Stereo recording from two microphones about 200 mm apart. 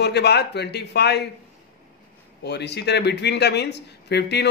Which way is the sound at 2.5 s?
60° left (ahead or behind).